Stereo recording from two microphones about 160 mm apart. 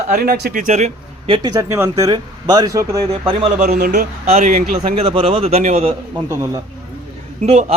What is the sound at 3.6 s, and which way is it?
Speech, 55° right (ahead or behind).